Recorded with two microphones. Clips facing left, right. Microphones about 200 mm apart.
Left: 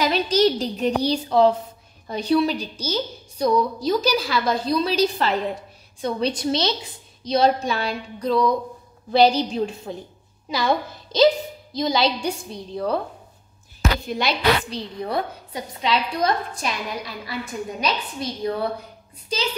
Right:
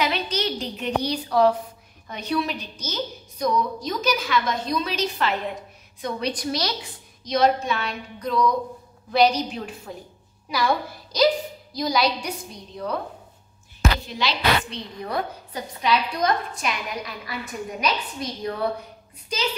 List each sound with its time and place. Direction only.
0.0 s a woman's voice: 40° left (ahead or behind)
14.0 s a woman's voice: 50° left (ahead or behind)
14.7 s a woman's voice: 30° left (ahead or behind)